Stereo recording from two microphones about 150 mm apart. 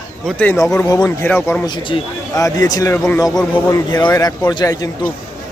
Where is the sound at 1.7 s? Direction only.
35° left (ahead or behind).